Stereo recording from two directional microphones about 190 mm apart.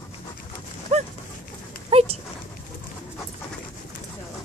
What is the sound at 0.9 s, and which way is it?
Dog, 35° right (ahead or behind).